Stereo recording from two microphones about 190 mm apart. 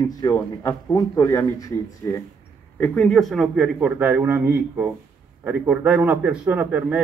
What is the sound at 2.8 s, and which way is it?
A man's voice, 5° left (ahead or behind).